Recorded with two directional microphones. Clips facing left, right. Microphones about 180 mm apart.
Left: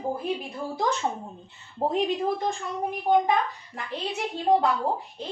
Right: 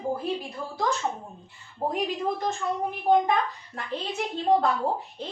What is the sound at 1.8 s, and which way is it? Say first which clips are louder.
Speech: left 3 dB; 25° left (ahead or behind).